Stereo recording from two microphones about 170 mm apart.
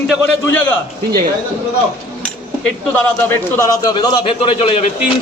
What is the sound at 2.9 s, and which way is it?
A man's voice, 10° left (ahead or behind).